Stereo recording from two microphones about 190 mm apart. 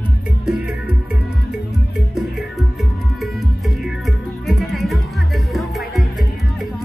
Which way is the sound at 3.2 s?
Centre (ahead or behind).